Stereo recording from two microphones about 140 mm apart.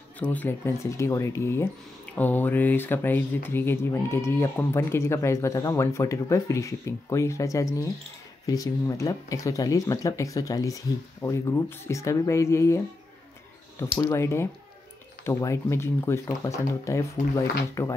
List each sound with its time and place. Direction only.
0.2 s speech: 10° left (ahead or behind)
13.9 s speech: 25° left (ahead or behind)